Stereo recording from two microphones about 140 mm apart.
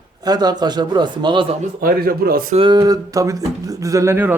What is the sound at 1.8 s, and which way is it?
Speech, 90° right.